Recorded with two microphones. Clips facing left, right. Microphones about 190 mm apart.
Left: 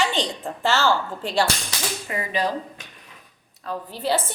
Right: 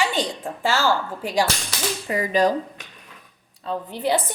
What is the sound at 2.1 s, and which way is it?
Speech, 40° right (ahead or behind).